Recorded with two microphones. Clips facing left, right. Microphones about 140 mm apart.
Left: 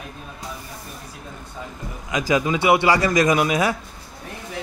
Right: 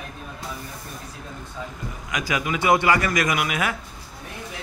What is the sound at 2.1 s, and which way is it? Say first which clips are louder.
A man's voice: left 6 dB; 25° left (ahead or behind).